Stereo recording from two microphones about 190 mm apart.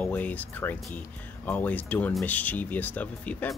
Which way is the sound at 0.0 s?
10° left (ahead or behind).